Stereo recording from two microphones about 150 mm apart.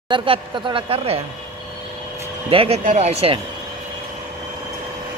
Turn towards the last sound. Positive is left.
turn(degrees=-45)  # may be behind; listen again after turning